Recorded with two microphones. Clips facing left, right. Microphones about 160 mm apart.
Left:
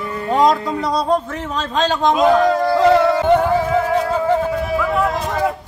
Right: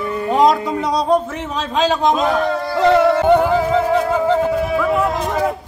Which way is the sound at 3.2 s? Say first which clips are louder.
Right 1 dB; 15° right (ahead or behind).